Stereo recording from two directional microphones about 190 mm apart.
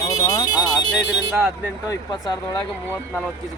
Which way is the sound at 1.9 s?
20° left (ahead or behind).